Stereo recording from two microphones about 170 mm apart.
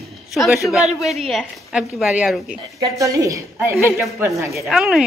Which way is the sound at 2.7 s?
20° right (ahead or behind).